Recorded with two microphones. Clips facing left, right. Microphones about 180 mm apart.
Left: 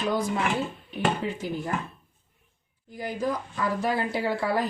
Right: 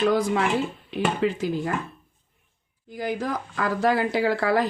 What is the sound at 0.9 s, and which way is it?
Speech, 90° right.